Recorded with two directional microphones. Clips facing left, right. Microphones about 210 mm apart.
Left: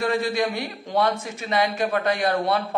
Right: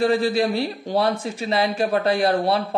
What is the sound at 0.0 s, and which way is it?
Speech, 35° right (ahead or behind).